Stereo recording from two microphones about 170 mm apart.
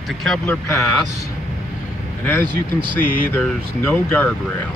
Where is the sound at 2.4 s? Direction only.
30° right (ahead or behind).